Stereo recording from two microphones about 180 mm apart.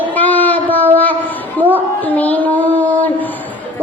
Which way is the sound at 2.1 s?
10° left (ahead or behind).